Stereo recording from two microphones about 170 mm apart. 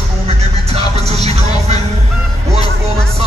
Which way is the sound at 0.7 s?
35° right (ahead or behind).